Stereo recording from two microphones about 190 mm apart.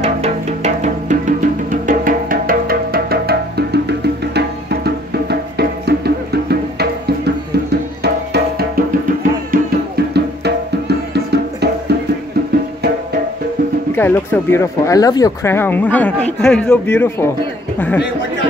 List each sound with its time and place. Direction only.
0.0 s music: 35° right (ahead or behind); by 13.0 s 60° right (ahead or behind)
13.9 s speech: 10° left (ahead or behind)